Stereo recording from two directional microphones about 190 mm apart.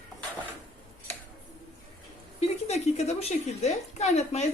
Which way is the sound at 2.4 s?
35° left (ahead or behind).